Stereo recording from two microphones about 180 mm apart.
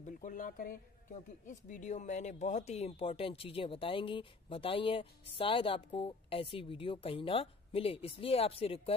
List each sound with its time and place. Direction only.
0.0 s speech: 45° left (ahead or behind)